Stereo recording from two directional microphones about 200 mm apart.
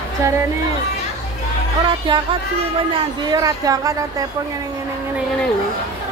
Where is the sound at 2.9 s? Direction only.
20° right (ahead or behind).